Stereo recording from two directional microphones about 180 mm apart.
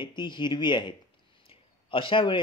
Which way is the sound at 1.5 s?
30° left (ahead or behind).